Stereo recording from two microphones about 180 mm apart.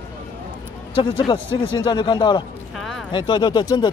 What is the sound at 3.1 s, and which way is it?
Speech, 25° left (ahead or behind).